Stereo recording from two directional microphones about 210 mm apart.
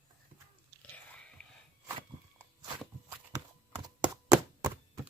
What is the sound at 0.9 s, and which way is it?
Whispering, 5° left (ahead or behind).